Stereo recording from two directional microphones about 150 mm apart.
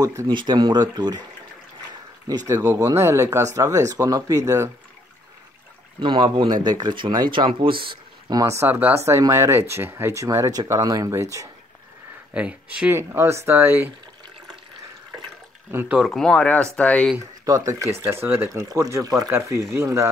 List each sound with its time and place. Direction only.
0.0 s speech: 20° right (ahead or behind)
0.3 s speech: 30° right (ahead or behind)
2.2 s speech: 25° right (ahead or behind)
5.9 s speech: 30° right (ahead or behind)
12.4 s speech: 10° right (ahead or behind)
15.7 s speech: 15° right (ahead or behind)
16.0 s speech: 5° left (ahead or behind)
17.5 s speech: 25° right (ahead or behind)